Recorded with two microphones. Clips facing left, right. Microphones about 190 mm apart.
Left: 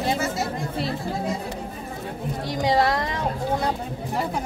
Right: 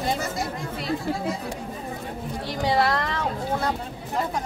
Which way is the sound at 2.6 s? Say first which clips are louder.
Left 1 dB; 20° left (ahead or behind).